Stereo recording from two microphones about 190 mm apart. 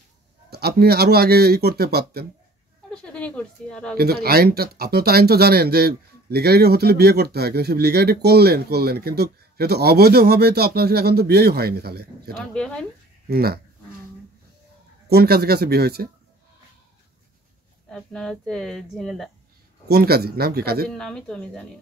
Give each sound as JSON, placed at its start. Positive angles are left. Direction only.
{"t": 0.5, "sound": "speech", "side_deg": -55}
{"t": 2.9, "sound": "speech", "side_deg": 5}
{"t": 3.9, "sound": "speech", "side_deg": -55}
{"t": 12.3, "sound": "speech", "side_deg": 0}
{"t": 13.3, "sound": "speech", "side_deg": -55}
{"t": 15.0, "sound": "speech", "side_deg": -55}
{"t": 17.8, "sound": "speech", "side_deg": 5}
{"t": 19.9, "sound": "speech", "side_deg": -55}
{"t": 20.9, "sound": "speech", "side_deg": 5}